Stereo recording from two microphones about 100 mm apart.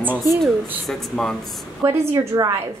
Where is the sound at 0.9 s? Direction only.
5° left (ahead or behind).